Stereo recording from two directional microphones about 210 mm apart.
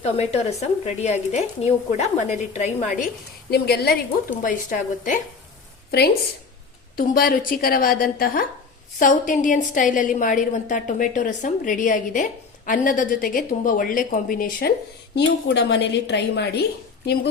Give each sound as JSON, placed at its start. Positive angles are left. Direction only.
{"t": 0.0, "sound": "a woman's voice", "side_deg": 30}
{"t": 3.5, "sound": "a woman's voice", "side_deg": 50}
{"t": 4.4, "sound": "a woman's voice", "side_deg": 40}
{"t": 6.9, "sound": "a woman's voice", "side_deg": 45}
{"t": 15.1, "sound": "a woman's voice", "side_deg": 55}